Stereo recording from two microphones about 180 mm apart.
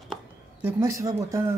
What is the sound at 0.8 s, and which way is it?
Speech, 15° right (ahead or behind).